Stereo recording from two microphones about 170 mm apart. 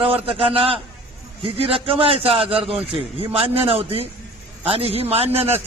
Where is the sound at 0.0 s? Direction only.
35° right (ahead or behind).